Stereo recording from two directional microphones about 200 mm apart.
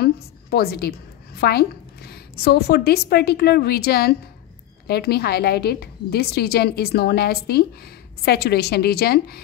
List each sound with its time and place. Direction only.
0.0 s a woman's voice: 50° left (ahead or behind)